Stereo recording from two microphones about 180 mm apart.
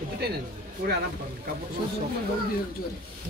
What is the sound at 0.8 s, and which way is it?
Speech, 55° right (ahead or behind).